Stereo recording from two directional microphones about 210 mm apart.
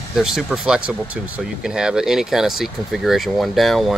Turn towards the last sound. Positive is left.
turn(degrees=0)  # may be behind; listen again after turning